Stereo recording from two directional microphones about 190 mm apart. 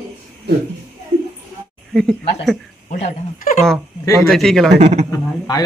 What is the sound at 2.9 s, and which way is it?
Speech, 40° left (ahead or behind).